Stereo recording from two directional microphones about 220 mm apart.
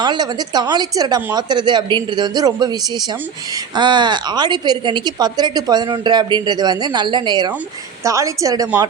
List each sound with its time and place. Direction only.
0.0 s a woman's voice: 20° right (ahead or behind)
3.8 s a woman's voice: 20° right (ahead or behind)